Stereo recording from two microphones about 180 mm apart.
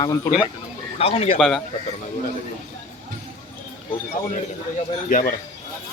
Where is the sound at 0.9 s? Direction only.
35° left (ahead or behind).